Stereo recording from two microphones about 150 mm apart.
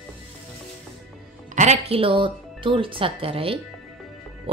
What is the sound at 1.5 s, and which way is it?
Speech, 50° right (ahead or behind).